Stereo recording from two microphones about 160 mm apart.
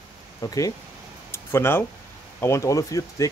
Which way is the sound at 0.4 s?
25° left (ahead or behind).